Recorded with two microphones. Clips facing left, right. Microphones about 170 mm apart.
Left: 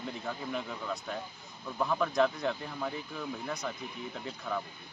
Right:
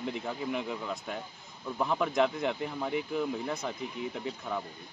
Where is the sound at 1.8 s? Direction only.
15° right (ahead or behind).